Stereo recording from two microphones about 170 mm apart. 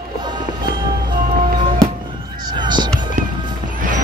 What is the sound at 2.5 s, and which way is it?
Music, 25° right (ahead or behind).